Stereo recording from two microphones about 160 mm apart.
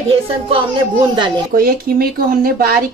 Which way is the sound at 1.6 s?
70° right (ahead or behind).